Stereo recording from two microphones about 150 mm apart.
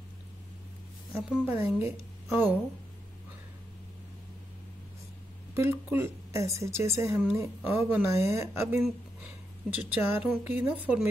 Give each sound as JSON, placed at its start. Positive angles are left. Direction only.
{"t": 1.1, "sound": "a woman's voice", "side_deg": -5}
{"t": 1.5, "sound": "a woman's voice", "side_deg": -15}
{"t": 5.5, "sound": "a woman's voice", "side_deg": -15}